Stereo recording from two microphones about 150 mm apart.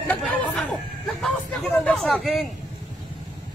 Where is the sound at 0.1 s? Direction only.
10° left (ahead or behind).